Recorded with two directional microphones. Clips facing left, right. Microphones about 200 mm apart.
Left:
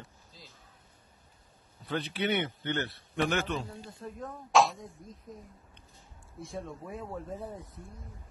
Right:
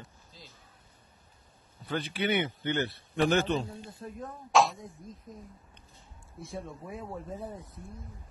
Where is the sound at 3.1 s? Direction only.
30° right (ahead or behind).